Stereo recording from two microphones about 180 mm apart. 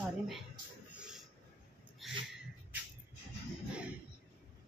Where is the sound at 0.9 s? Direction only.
5° right (ahead or behind).